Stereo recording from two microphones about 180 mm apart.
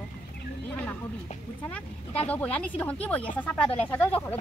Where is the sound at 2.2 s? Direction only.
10° left (ahead or behind).